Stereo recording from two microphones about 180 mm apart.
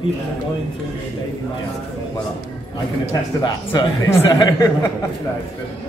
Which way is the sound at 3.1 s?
20° left (ahead or behind).